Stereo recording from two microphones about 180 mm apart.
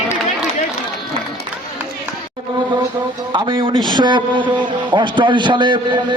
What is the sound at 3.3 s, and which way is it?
A man's voice, 25° right (ahead or behind).